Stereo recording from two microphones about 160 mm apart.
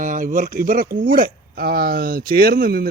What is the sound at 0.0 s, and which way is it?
Speech, 55° right (ahead or behind).